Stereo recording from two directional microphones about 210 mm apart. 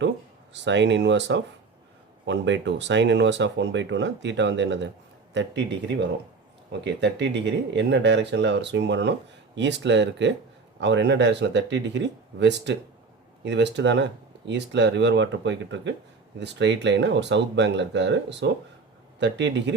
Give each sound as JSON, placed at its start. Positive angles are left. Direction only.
{"t": 0.5, "sound": "speech", "side_deg": -60}